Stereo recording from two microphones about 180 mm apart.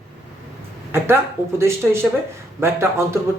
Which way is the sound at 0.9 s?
15° right (ahead or behind).